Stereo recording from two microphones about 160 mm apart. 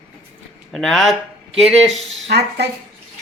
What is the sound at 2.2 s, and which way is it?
Speech, 90° right.